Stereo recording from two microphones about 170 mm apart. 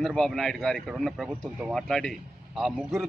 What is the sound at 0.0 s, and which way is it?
A man's voice, 5° left (ahead or behind).